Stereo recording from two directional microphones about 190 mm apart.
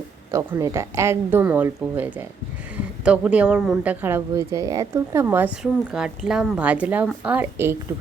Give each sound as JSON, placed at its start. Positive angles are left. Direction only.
{"t": 0.3, "sound": "a woman's voice", "side_deg": -15}